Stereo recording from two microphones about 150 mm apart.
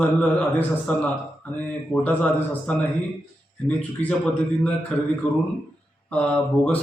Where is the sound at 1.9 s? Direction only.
10° left (ahead or behind).